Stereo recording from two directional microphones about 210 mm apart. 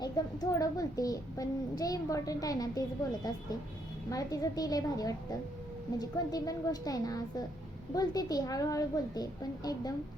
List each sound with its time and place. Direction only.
0.0 s a child's voice: 15° left (ahead or behind)